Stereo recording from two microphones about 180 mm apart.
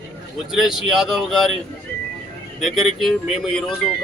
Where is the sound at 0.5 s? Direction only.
Centre (ahead or behind).